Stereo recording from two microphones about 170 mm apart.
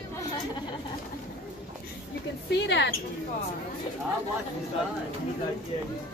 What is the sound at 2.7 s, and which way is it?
Speech, 90° left.